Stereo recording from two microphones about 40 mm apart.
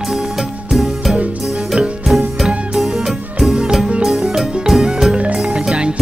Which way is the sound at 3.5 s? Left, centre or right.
Centre.